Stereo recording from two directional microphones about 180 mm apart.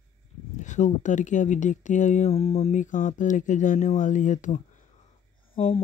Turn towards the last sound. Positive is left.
turn(degrees=30)  # may be behind; listen again after turning